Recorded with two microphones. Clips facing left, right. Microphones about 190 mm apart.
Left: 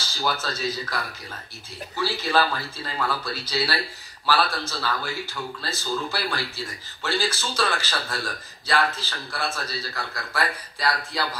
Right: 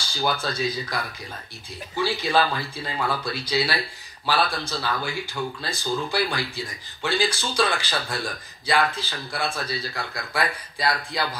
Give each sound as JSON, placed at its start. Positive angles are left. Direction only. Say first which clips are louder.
{"t": 0.0, "sound": "speech", "louder": "right 2 dB", "side_deg": -15}